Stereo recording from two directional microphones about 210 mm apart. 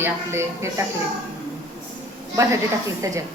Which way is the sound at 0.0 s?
10° right (ahead or behind).